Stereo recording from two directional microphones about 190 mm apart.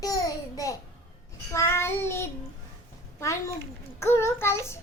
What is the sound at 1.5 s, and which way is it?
Speech, 15° left (ahead or behind).